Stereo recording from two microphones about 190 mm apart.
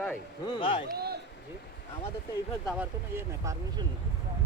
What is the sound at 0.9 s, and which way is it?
Speech, 55° right (ahead or behind).